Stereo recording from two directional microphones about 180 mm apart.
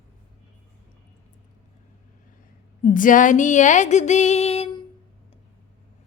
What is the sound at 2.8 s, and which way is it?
Mantra, 45° left (ahead or behind).